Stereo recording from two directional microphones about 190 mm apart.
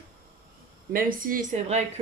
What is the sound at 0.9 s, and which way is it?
Speech, 50° right (ahead or behind).